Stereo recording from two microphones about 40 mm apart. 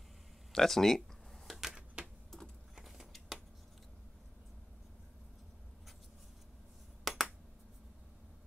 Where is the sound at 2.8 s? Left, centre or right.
Centre.